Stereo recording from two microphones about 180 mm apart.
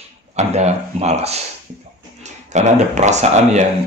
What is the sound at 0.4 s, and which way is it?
Speech, 40° right (ahead or behind).